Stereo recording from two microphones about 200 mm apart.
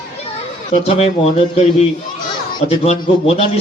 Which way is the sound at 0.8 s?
30° left (ahead or behind).